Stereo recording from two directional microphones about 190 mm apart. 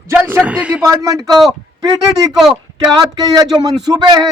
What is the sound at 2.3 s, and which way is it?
Speech, centre (ahead or behind).